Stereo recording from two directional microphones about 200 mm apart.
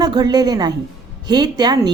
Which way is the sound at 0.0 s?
20° right (ahead or behind).